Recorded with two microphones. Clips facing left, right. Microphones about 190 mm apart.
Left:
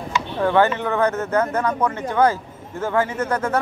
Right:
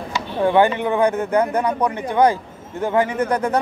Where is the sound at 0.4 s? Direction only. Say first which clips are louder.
Right 2 dB; 15° right (ahead or behind).